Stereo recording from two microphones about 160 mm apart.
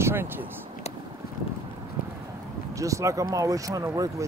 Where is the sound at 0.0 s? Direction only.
15° right (ahead or behind).